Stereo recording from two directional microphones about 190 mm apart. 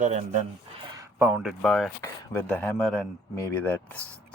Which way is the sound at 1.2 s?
5° right (ahead or behind).